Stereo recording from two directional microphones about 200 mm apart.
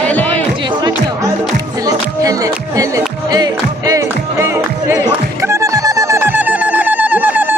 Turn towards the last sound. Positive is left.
turn(degrees=-10)  # may be behind; listen again after turning